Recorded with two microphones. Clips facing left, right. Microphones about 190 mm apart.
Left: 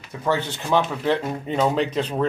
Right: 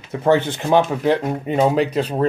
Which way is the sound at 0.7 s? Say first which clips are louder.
Right 5 dB; 45° right (ahead or behind).